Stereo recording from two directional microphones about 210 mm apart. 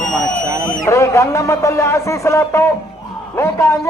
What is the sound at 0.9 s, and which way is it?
A man's voice, 15° left (ahead or behind).